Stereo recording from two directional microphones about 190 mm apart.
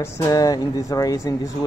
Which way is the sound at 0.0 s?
15° left (ahead or behind).